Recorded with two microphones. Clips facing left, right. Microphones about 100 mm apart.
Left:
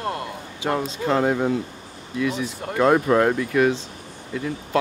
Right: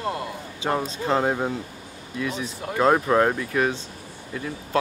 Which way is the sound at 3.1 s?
20° right (ahead or behind).